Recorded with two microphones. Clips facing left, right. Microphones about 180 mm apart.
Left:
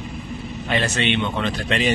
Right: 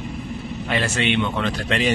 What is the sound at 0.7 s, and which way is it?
Speech, 10° right (ahead or behind).